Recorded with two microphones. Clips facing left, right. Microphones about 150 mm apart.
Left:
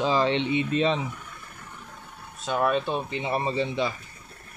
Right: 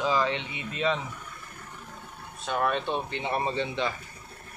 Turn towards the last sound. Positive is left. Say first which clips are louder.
# left 2 dB
turn(degrees=5)  # may be behind; listen again after turning